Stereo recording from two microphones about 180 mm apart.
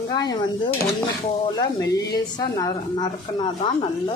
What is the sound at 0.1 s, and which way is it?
Speech, 20° left (ahead or behind).